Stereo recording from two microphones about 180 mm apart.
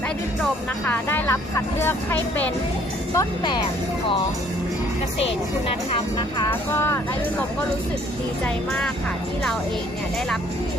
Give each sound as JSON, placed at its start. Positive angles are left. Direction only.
{"t": 0.9, "sound": "speech", "side_deg": 10}
{"t": 3.2, "sound": "speech", "side_deg": 25}
{"t": 6.5, "sound": "speech", "side_deg": 15}